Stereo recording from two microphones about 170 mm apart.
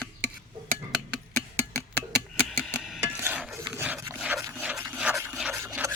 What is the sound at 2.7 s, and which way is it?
Music, centre (ahead or behind).